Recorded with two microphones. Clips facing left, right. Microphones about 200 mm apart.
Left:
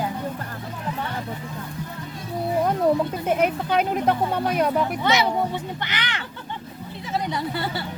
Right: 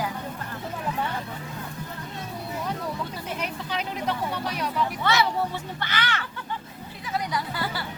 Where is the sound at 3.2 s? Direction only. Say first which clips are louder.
Left 11 dB; 50° left (ahead or behind).